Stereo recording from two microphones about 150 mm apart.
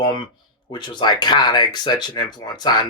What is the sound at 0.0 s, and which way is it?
Speech, 30° left (ahead or behind).